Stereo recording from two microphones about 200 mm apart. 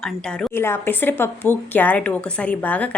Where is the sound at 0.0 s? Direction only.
5° left (ahead or behind).